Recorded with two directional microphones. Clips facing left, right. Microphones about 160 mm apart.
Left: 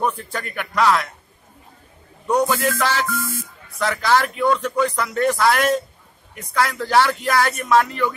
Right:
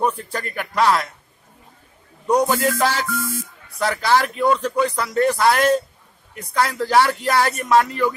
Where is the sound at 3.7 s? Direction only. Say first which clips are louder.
Even; 10° right (ahead or behind).